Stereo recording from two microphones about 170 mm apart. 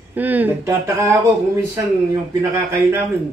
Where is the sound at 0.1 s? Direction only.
10° right (ahead or behind).